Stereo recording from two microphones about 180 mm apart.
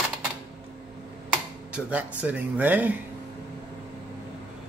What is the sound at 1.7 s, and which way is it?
Speech, 10° right (ahead or behind).